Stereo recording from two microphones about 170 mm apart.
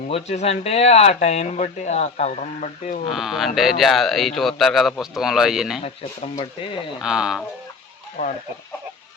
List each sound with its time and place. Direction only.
0.1 s speech: 40° left (ahead or behind)
3.1 s speech: centre (ahead or behind)
6.3 s speech: 30° left (ahead or behind)
7.0 s speech: 5° right (ahead or behind)